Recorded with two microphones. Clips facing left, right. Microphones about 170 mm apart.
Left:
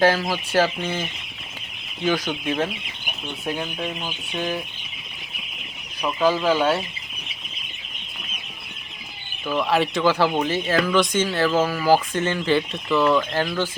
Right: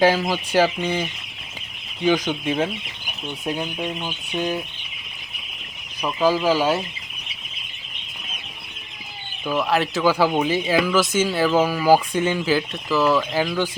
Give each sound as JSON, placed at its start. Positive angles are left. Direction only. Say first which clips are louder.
{"t": 0.0, "sound": "speech", "louder": "right 1 dB", "side_deg": -15}
{"t": 2.0, "sound": "speech", "louder": "right 3 dB", "side_deg": -15}
{"t": 3.8, "sound": "speech", "louder": "right 2 dB", "side_deg": 0}
{"t": 4.4, "sound": "speech", "louder": "right 2 dB", "side_deg": -15}
{"t": 6.0, "sound": "speech", "louder": "right 1 dB", "side_deg": -10}
{"t": 9.5, "sound": "speech", "louder": "even", "side_deg": -5}